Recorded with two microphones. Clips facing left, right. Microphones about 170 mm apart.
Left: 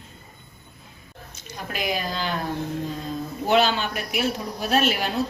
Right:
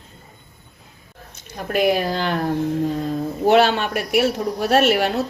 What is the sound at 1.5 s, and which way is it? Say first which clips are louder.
Speech: right 9 dB; 60° right (ahead or behind).